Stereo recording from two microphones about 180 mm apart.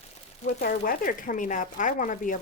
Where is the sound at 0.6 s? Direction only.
55° left (ahead or behind).